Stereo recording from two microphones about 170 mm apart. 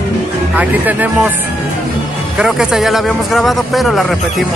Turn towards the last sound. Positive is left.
turn(degrees=0)  # may be behind; listen again after turning